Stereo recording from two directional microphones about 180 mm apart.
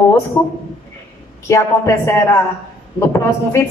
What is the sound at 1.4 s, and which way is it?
A woman's voice, 15° left (ahead or behind).